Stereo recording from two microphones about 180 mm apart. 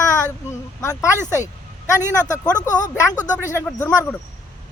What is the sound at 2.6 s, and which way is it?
Speech, 20° left (ahead or behind).